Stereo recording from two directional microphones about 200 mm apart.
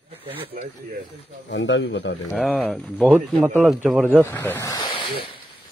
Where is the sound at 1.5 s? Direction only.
70° left (ahead or behind).